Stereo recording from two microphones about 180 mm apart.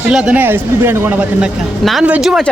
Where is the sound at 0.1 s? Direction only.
5° right (ahead or behind).